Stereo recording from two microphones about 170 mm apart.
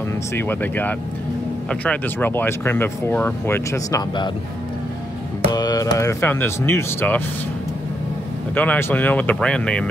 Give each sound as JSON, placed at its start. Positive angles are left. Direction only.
{"t": 0.4, "sound": "speech", "side_deg": 10}
{"t": 5.5, "sound": "speech", "side_deg": 25}
{"t": 8.5, "sound": "speech", "side_deg": 10}